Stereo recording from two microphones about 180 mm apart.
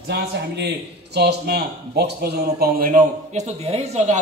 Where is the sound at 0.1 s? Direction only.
65° right (ahead or behind).